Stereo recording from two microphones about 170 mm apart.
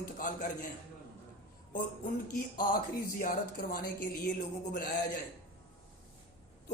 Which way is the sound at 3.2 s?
55° left (ahead or behind).